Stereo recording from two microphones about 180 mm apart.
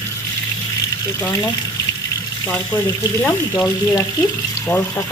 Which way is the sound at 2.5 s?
15° left (ahead or behind).